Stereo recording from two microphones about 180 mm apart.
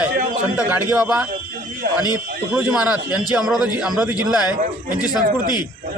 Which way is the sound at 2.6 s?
5° right (ahead or behind).